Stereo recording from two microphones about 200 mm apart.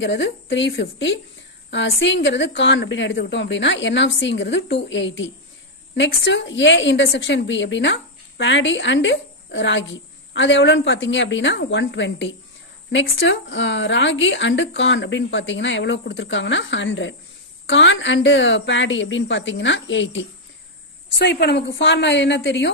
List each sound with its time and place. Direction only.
0.0 s a woman's voice: 65° left (ahead or behind)
21.2 s a woman's voice: 55° left (ahead or behind)